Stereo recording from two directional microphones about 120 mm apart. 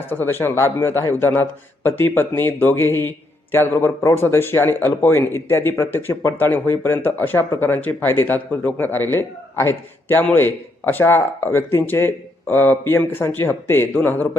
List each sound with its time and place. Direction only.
0.1 s a man's voice: 15° left (ahead or behind)